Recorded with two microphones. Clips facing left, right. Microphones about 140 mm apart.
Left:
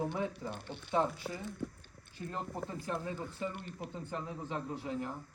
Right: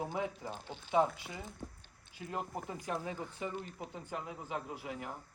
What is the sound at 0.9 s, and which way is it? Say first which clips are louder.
Speech: right 2 dB; 10° right (ahead or behind).